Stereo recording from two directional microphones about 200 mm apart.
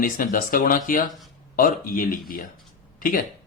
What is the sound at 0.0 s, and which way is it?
A man's voice, 40° left (ahead or behind).